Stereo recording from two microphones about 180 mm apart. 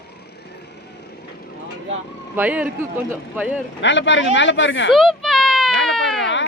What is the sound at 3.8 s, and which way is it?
Speech, 90° left.